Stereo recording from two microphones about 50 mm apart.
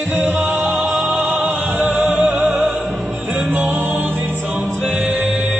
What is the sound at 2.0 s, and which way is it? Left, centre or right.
Music, right.